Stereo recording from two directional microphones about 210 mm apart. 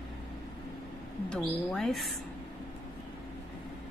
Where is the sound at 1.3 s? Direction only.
5° left (ahead or behind).